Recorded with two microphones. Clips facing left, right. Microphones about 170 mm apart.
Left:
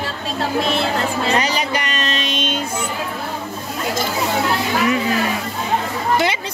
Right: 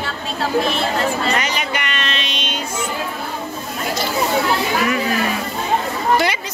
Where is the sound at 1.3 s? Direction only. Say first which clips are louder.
Left 3 dB; 35° left (ahead or behind).